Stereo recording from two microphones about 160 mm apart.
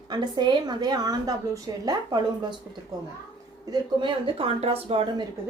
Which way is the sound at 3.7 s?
35° right (ahead or behind).